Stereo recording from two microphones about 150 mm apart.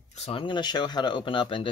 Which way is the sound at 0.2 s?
35° left (ahead or behind).